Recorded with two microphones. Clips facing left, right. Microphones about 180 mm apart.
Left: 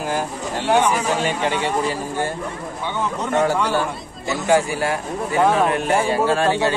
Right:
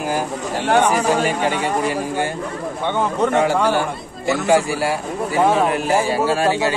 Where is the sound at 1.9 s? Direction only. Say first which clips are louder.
Right 2 dB; 15° right (ahead or behind).